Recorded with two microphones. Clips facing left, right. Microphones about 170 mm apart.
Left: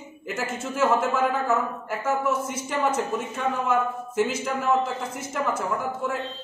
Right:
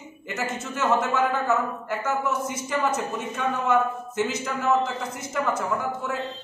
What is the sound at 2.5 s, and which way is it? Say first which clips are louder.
A man's voice: even; centre (ahead or behind).